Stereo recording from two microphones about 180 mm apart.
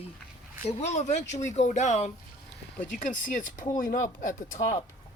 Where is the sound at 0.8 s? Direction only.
40° left (ahead or behind).